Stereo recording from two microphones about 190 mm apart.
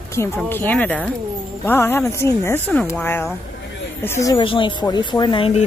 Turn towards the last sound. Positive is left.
turn(degrees=30)  # may be behind; listen again after turning